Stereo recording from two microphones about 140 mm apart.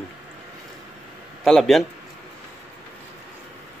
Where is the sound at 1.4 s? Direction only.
Centre (ahead or behind).